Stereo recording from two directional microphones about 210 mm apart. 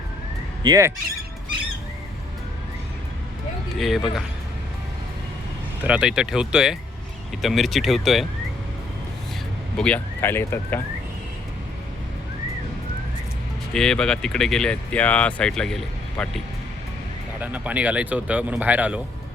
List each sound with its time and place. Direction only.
0.6 s speech: 15° right (ahead or behind)
3.8 s speech: centre (ahead or behind)
5.8 s speech: 5° right (ahead or behind)
9.7 s speech: 5° left (ahead or behind)
13.7 s speech: centre (ahead or behind)
17.4 s speech: 5° right (ahead or behind)